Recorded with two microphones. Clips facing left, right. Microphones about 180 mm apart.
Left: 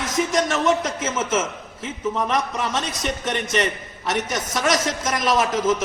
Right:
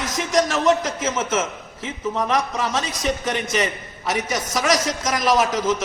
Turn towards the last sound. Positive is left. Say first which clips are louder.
# right 1 dB
turn(degrees=0)  # may be behind; listen again after turning